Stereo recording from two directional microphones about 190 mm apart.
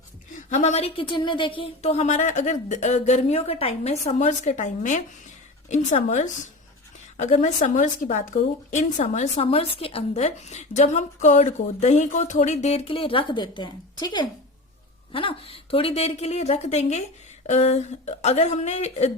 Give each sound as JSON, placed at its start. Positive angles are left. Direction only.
{"t": 0.3, "sound": "a woman's voice", "side_deg": 40}